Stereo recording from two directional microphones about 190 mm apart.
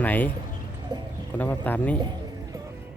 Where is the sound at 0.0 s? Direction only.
10° left (ahead or behind).